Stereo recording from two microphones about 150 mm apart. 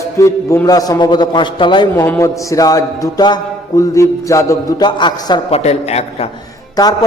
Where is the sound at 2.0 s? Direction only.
20° left (ahead or behind).